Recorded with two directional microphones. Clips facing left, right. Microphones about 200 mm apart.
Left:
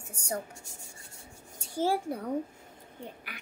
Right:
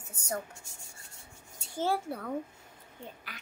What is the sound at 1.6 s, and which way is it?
Speech, 10° left (ahead or behind).